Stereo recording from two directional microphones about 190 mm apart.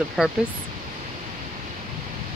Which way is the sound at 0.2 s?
Centre (ahead or behind).